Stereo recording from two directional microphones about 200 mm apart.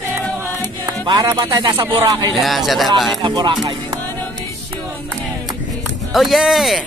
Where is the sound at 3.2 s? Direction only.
25° right (ahead or behind).